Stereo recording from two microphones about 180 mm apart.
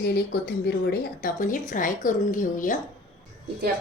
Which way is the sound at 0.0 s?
60° left (ahead or behind).